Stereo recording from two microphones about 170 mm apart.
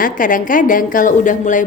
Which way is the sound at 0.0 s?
50° left (ahead or behind).